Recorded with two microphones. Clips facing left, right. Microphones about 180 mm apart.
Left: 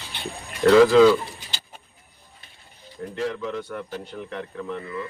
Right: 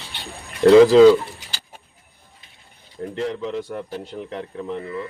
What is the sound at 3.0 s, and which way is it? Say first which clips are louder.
Speech: right 2 dB; 25° right (ahead or behind).